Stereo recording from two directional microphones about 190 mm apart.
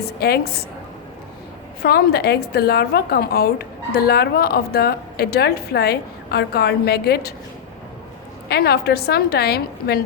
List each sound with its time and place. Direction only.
0.0 s a woman's voice: 55° left (ahead or behind)
1.8 s a woman's voice: 55° left (ahead or behind)
8.4 s a woman's voice: 55° left (ahead or behind)